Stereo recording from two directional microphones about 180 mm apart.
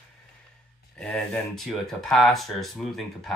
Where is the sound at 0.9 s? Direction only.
5° left (ahead or behind).